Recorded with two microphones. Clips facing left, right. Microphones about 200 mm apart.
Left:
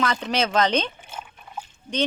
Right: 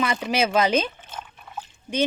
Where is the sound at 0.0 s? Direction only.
10° right (ahead or behind).